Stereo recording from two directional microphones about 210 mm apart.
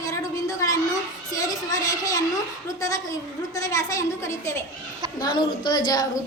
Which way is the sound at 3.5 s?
15° left (ahead or behind).